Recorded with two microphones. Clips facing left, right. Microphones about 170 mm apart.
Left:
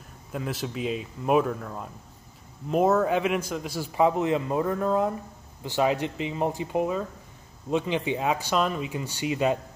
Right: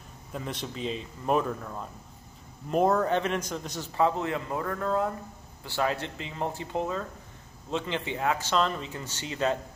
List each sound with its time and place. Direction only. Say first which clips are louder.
0.3 s a man's voice: left 4 dB; 5° left (ahead or behind)